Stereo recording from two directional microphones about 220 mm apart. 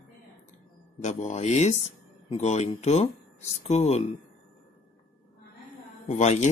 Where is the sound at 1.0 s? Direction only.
30° left (ahead or behind).